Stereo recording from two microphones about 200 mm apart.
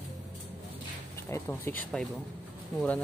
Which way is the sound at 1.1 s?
15° left (ahead or behind).